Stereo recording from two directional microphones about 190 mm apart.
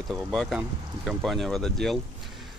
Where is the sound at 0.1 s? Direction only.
Centre (ahead or behind).